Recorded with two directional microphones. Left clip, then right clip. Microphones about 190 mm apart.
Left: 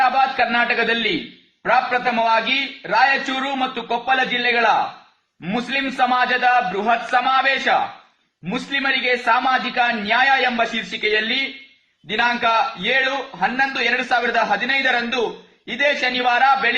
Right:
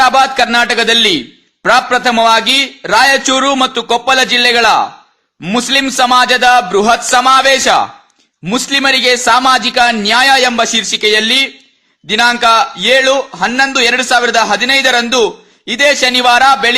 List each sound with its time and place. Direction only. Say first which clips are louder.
0.0 s a man's voice: right 8 dB; 45° right (ahead or behind)